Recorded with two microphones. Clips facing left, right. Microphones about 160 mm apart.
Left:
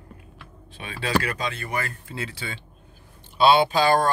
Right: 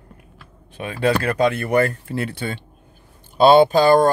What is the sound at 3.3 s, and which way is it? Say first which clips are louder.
Speech: right 6 dB; 45° right (ahead or behind).